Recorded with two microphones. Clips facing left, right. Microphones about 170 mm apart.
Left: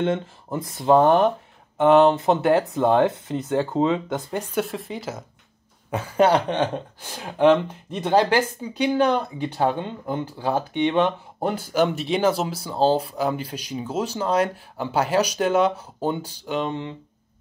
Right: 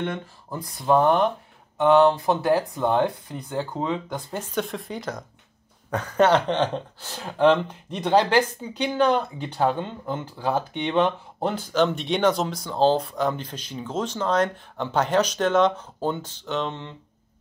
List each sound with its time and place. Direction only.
0.0 s speech: 25° left (ahead or behind)
4.4 s speech: 10° left (ahead or behind)